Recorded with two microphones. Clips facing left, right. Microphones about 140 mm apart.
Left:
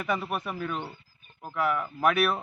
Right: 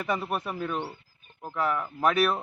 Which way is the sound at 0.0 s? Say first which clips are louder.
Right 1 dB; centre (ahead or behind).